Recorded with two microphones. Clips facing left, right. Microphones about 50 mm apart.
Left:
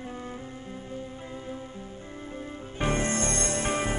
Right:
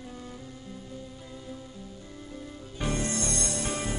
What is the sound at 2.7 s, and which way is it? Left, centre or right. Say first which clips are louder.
Music: left 4 dB; left.